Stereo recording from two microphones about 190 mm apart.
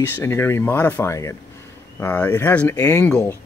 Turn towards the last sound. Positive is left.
turn(degrees=15)  # may be behind; listen again after turning